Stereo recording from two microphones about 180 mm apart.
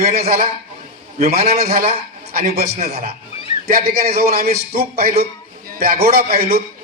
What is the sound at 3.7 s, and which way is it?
A man's voice, 55° right (ahead or behind).